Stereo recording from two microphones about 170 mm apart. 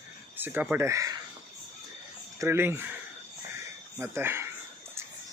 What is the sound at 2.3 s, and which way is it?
Speech, 15° right (ahead or behind).